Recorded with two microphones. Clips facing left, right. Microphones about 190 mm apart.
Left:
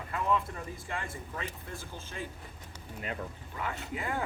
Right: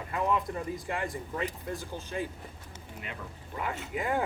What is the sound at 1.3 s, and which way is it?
Speech, 35° right (ahead or behind).